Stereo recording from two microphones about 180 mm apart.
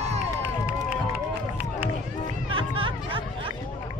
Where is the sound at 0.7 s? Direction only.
10° right (ahead or behind).